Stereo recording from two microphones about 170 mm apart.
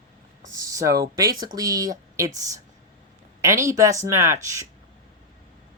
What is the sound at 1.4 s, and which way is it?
Speech, 20° right (ahead or behind).